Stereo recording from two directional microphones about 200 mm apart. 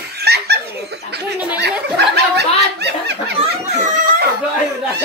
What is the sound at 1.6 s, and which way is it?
Snicker, 55° right (ahead or behind).